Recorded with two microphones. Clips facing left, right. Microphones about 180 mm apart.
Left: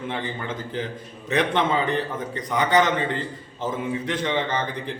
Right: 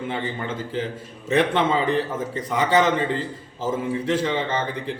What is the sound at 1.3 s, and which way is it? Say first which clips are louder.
Speech: right 2 dB; centre (ahead or behind).